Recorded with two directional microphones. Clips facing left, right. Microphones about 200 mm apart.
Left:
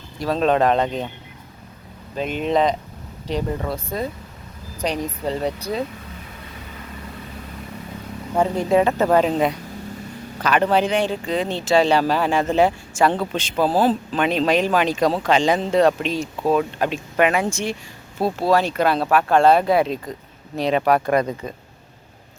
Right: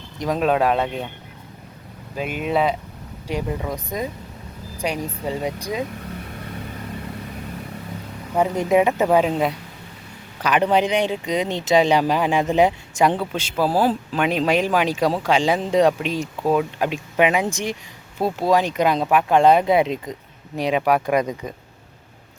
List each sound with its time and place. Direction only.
0.2 s speech: 15° right (ahead or behind)
2.1 s speech: 10° right (ahead or behind)
8.4 s speech: 15° right (ahead or behind)
10.4 s speech: 15° right (ahead or behind)